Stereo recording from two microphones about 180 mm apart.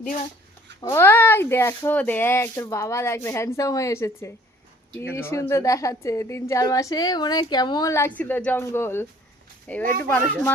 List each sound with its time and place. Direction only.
0.8 s speech: 25° left (ahead or behind)
1.0 s a woman's voice: 10° left (ahead or behind)